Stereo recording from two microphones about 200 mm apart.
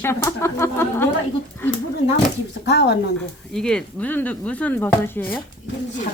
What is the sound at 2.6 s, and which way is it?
Speech, 60° left (ahead or behind).